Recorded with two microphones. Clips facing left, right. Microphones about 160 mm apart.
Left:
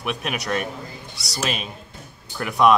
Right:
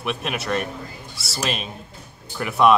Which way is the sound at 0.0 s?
Centre (ahead or behind).